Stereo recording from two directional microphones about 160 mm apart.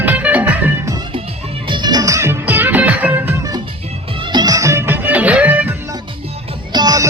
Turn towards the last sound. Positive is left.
turn(degrees=-25)  # may be behind; listen again after turning